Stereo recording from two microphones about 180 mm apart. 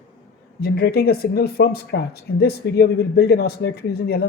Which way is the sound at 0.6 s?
60° left (ahead or behind).